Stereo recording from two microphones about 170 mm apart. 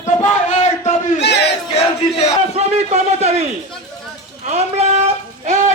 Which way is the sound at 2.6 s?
40° right (ahead or behind).